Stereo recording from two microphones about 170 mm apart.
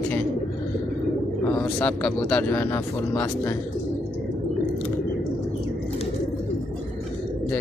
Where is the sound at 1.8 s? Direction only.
10° left (ahead or behind).